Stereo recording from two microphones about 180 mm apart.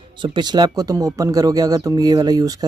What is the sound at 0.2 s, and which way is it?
Speech, 25° right (ahead or behind).